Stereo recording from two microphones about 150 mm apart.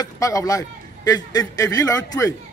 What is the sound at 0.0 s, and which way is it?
A man's voice, 20° left (ahead or behind).